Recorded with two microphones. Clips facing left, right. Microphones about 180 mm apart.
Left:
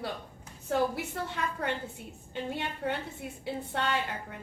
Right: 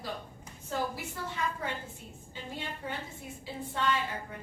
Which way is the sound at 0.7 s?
65° left (ahead or behind).